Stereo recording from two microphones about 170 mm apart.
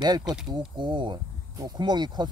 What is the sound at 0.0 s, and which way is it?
Speech, 25° right (ahead or behind).